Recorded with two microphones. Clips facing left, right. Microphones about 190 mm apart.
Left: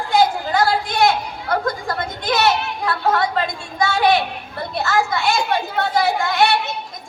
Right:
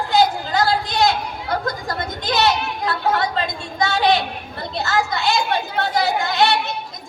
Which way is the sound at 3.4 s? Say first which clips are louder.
Left 1 dB; 20° right (ahead or behind).